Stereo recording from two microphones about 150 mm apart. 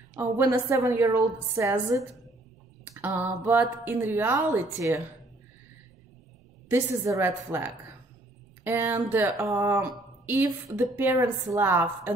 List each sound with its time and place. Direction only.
0.2 s a woman's voice: 15° right (ahead or behind)
6.7 s speech: 15° right (ahead or behind)